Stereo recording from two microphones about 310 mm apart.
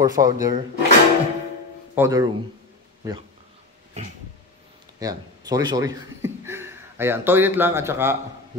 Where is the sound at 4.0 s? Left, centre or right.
Right.